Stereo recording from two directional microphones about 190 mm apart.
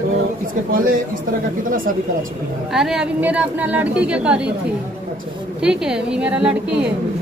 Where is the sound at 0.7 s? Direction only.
45° right (ahead or behind).